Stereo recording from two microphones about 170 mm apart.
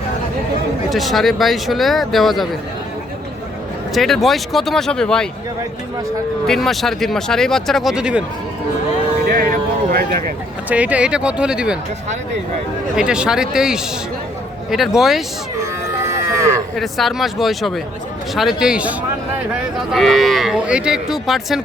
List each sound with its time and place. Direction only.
0.9 s speech: centre (ahead or behind)
3.9 s speech: centre (ahead or behind)
6.5 s speech: centre (ahead or behind)
9.2 s a sound: 60° right (ahead or behind)
10.7 s speech: 10° right (ahead or behind)
13.0 s speech: 5° right (ahead or behind)
16.7 s speech: centre (ahead or behind)